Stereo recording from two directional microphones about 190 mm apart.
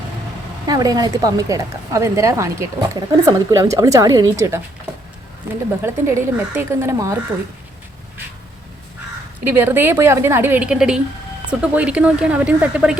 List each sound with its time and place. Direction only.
0.7 s speech: 20° right (ahead or behind)
5.8 s speech: 10° right (ahead or behind)
9.4 s speech: 10° right (ahead or behind)